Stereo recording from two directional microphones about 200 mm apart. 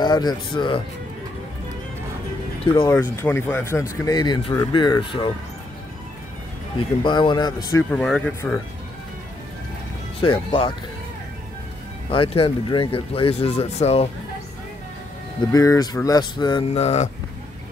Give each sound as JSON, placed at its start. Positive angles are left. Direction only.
{"t": 0.0, "sound": "speech", "side_deg": 20}
{"t": 2.7, "sound": "speech", "side_deg": 15}
{"t": 7.0, "sound": "speech", "side_deg": 25}
{"t": 7.9, "sound": "speech", "side_deg": 5}
{"t": 10.2, "sound": "speech", "side_deg": 25}
{"t": 12.1, "sound": "speech", "side_deg": 25}
{"t": 15.5, "sound": "speech", "side_deg": 15}